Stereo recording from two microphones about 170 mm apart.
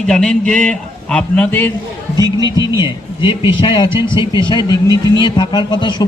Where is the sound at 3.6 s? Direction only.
30° left (ahead or behind).